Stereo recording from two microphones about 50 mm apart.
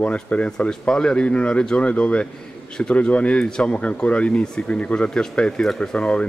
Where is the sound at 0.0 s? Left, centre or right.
Left.